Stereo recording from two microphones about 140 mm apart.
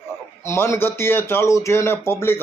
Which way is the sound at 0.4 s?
20° left (ahead or behind).